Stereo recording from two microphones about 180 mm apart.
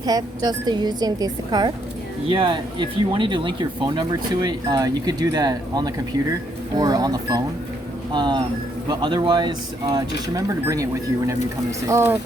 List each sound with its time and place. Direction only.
0.0 s speech: 20° right (ahead or behind)